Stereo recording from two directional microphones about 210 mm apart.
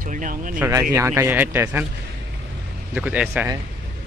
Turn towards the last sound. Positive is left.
turn(degrees=-5)  # may be behind; listen again after turning